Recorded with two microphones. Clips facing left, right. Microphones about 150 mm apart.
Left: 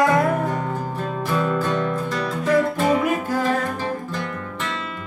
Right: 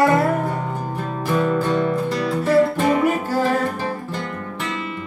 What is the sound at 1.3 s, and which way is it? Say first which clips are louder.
Music: right 3 dB; 15° right (ahead or behind).